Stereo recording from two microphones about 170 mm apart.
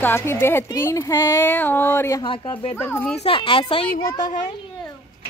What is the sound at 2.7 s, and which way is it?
Speech, 10° left (ahead or behind).